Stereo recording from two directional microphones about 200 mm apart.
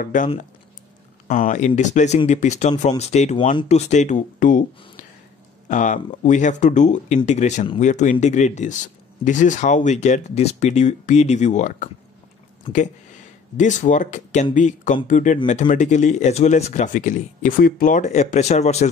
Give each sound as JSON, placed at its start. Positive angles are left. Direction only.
{"t": 0.0, "sound": "speech", "side_deg": 40}
{"t": 13.6, "sound": "speech", "side_deg": 40}